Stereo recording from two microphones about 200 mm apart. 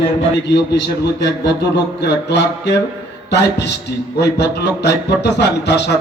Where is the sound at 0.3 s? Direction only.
60° left (ahead or behind).